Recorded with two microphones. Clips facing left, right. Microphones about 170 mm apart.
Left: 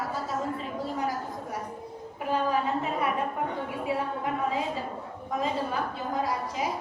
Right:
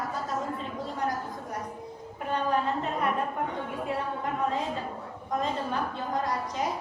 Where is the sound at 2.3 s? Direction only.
5° left (ahead or behind).